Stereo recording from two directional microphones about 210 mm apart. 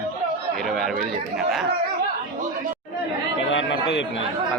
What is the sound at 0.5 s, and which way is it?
Speech, centre (ahead or behind).